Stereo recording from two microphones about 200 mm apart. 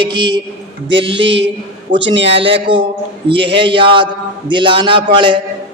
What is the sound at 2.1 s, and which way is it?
Speech, 60° right (ahead or behind).